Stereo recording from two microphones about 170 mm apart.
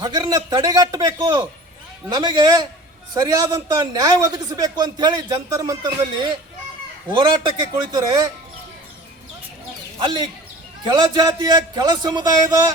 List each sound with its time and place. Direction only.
0.0 s a man's voice: 25° right (ahead or behind)
10.0 s a man's voice: 25° right (ahead or behind)